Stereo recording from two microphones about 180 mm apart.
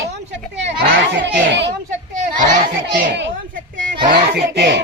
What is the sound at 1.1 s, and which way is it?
Children playing, 70° right (ahead or behind).